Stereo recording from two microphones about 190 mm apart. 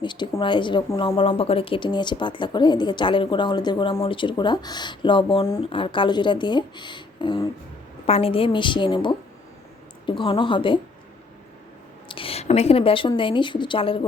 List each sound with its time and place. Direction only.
0.0 s a woman's voice: 25° left (ahead or behind)
12.0 s a woman's voice: 30° left (ahead or behind)